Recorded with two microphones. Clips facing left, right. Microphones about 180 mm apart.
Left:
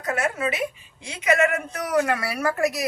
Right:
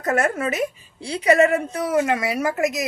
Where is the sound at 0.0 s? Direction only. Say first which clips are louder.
Right 4 dB; 45° right (ahead or behind).